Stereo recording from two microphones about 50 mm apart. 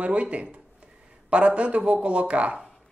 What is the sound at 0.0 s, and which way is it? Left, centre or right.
Speech, right.